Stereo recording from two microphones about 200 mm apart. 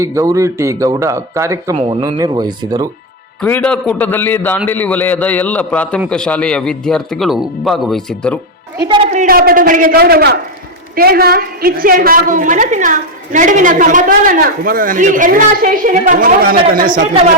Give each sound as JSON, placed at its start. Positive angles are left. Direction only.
{"t": 0.0, "sound": "speech", "side_deg": -15}
{"t": 3.4, "sound": "a man's voice", "side_deg": 5}
{"t": 9.0, "sound": "a woman's voice", "side_deg": -40}